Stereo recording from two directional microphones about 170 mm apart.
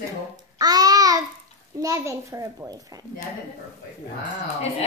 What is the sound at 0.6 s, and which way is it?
Babbling, 25° right (ahead or behind).